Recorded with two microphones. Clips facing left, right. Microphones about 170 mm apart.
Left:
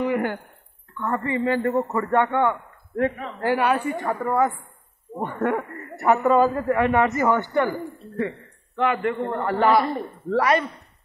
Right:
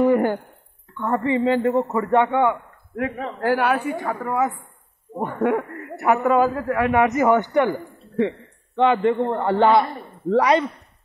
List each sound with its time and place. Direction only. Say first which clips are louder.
0.0 s dishes: right 6 dB; 45° right (ahead or behind)
1.0 s a man's voice: right 4 dB; 20° right (ahead or behind)
3.3 s speech: right 2 dB; centre (ahead or behind)
5.1 s a man's voice: right 3 dB; 10° right (ahead or behind)
8.7 s a man's voice: right 5 dB; 25° right (ahead or behind)